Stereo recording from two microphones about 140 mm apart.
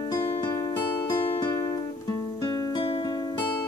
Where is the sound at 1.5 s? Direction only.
25° left (ahead or behind).